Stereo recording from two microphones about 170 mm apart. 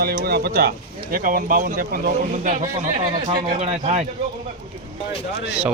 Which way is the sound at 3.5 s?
45° right (ahead or behind).